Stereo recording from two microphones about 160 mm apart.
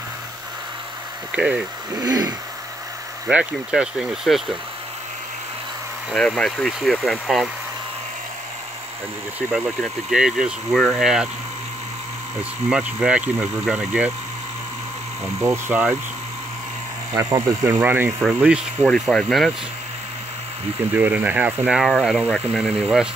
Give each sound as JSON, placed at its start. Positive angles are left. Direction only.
{"t": 1.3, "sound": "speech", "side_deg": -5}
{"t": 2.0, "sound": "speech", "side_deg": -25}
{"t": 3.3, "sound": "speech", "side_deg": -5}
{"t": 6.1, "sound": "speech", "side_deg": 5}
{"t": 9.5, "sound": "speech", "side_deg": -5}
{"t": 12.6, "sound": "speech", "side_deg": -5}
{"t": 15.2, "sound": "speech", "side_deg": -15}
{"t": 17.1, "sound": "speech", "side_deg": -20}
{"t": 18.9, "sound": "speech", "side_deg": 5}
{"t": 20.9, "sound": "speech", "side_deg": -10}